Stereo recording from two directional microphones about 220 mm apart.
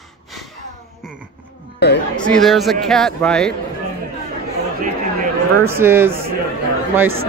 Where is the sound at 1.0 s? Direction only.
5° right (ahead or behind).